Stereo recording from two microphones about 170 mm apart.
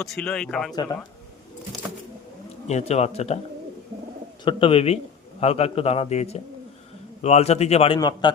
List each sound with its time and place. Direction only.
0.0 s a man's voice: 5° left (ahead or behind)
0.7 s a man's voice: 25° left (ahead or behind)
2.6 s a man's voice: 40° left (ahead or behind)
4.4 s a man's voice: 35° left (ahead or behind)
7.9 s a man's voice: 25° left (ahead or behind)